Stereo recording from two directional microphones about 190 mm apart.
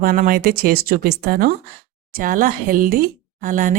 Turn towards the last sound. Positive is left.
turn(degrees=-45)  # may be behind; listen again after turning